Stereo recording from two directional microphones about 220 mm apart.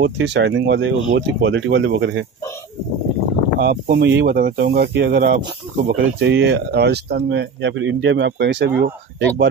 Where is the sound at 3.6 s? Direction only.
45° right (ahead or behind).